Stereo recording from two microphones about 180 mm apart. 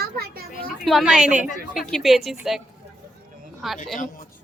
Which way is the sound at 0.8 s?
Centre (ahead or behind).